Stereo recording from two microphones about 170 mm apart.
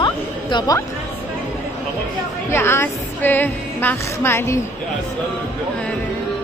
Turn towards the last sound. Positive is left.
turn(degrees=15)  # may be behind; listen again after turning